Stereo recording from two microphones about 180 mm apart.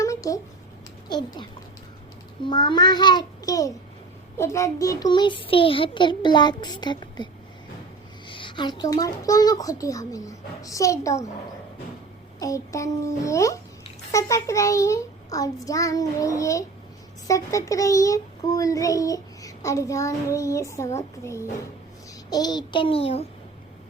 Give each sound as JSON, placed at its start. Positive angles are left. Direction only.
{"t": 0.0, "sound": "a sound", "side_deg": 20}
{"t": 1.1, "sound": "a child's voice", "side_deg": 25}
{"t": 8.3, "sound": "a child's voice", "side_deg": 25}
{"t": 12.4, "sound": "a child's voice", "side_deg": 20}